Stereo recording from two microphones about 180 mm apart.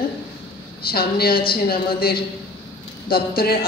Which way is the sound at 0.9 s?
55° left (ahead or behind).